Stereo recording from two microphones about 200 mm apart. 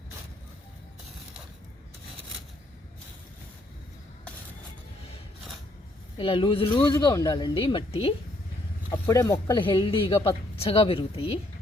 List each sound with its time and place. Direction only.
6.1 s speech: 25° left (ahead or behind)
8.9 s speech: 15° left (ahead or behind)